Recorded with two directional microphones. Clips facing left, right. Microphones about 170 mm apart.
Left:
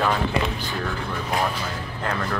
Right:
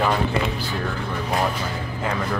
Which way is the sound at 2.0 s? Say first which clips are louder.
Right 1 dB; 5° right (ahead or behind).